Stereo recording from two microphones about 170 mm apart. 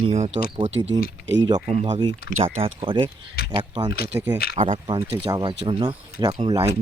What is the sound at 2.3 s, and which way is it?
Speech, 35° right (ahead or behind).